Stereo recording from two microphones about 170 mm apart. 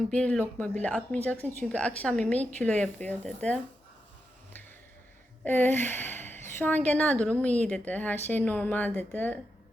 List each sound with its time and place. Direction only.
0.1 s a woman's voice: 5° left (ahead or behind)
5.4 s a woman's voice: 10° left (ahead or behind)